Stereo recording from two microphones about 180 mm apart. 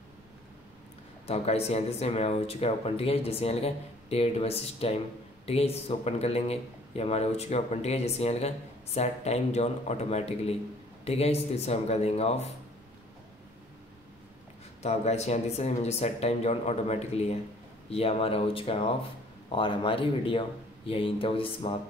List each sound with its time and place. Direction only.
1.2 s a man's voice: 35° left (ahead or behind)
14.8 s a man's voice: 35° left (ahead or behind)